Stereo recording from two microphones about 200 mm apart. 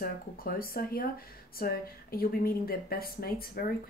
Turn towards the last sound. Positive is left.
turn(degrees=50)  # may be behind; listen again after turning